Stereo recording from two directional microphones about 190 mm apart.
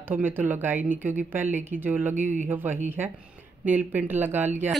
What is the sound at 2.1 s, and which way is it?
Speech, 40° right (ahead or behind).